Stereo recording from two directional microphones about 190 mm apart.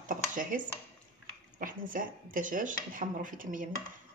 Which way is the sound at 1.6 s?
45° right (ahead or behind).